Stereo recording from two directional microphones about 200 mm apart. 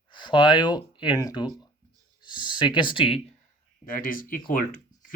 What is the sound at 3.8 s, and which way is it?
Speech, 45° left (ahead or behind).